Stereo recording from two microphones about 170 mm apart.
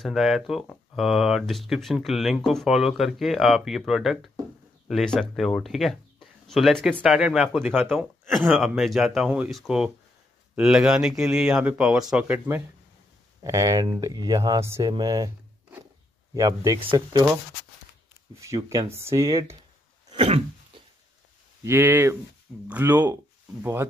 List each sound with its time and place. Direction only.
0.0 s speech: centre (ahead or behind)
8.3 s speech: centre (ahead or behind)
13.4 s speech: 20° right (ahead or behind)
14.9 s a sound: 25° right (ahead or behind)
16.3 s speech: 20° right (ahead or behind)
18.4 s speech: 20° right (ahead or behind)
20.1 s cough: 35° right (ahead or behind)
20.7 s a sound: 30° right (ahead or behind)
21.6 s speech: 15° right (ahead or behind)